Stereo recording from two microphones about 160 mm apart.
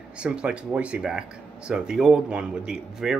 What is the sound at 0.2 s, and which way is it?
Speech, 5° right (ahead or behind).